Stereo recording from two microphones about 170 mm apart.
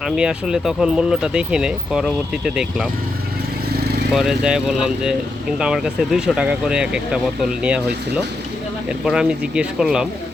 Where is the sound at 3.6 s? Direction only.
65° right (ahead or behind).